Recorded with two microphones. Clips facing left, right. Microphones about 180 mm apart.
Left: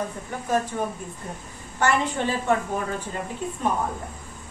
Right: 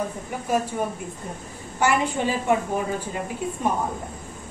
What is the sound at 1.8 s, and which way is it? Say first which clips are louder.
Speech: right 1 dB; 10° right (ahead or behind).